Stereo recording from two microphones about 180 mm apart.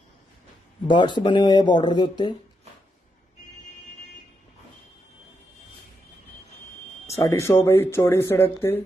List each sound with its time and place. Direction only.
0.8 s speech: 25° left (ahead or behind)
7.2 s speech: 15° left (ahead or behind)